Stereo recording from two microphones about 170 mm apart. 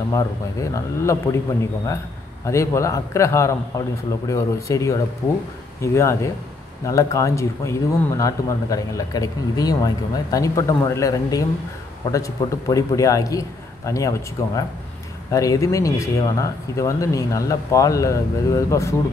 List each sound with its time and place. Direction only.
0.1 s a man's voice: 20° left (ahead or behind)
2.4 s a man's voice: 15° left (ahead or behind)